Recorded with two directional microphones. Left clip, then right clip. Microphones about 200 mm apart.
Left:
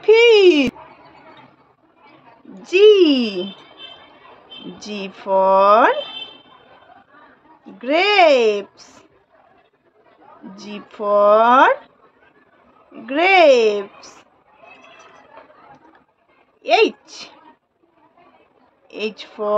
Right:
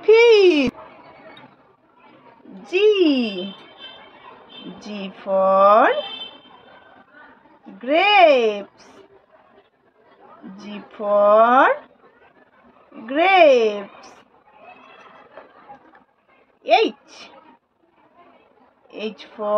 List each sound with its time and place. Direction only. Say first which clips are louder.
0.0 s a sound: left 1 dB; 10° left (ahead or behind)
2.6 s a sound: left 5 dB; 25° left (ahead or behind)
4.7 s a woman's voice: left 4 dB; 20° left (ahead or behind)
7.8 s a woman's voice: even; 20° left (ahead or behind)
10.5 s a woman's voice: left 3 dB; 20° left (ahead or behind)
13.0 s a woman's voice: left 1 dB; 20° left (ahead or behind)
16.6 s a woman's voice: left 2 dB; 25° left (ahead or behind)
18.9 s a woman's voice: left 4 dB; 25° left (ahead or behind)